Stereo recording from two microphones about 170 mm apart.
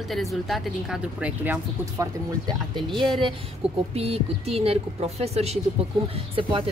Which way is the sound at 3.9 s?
35° right (ahead or behind).